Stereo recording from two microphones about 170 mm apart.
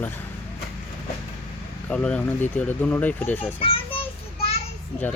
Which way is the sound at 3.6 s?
30° left (ahead or behind).